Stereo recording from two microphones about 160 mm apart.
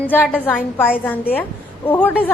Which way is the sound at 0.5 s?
5° right (ahead or behind).